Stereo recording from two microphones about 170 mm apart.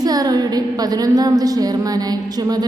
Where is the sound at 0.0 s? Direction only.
20° right (ahead or behind).